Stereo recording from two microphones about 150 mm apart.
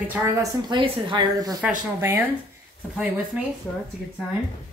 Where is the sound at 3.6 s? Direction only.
10° left (ahead or behind).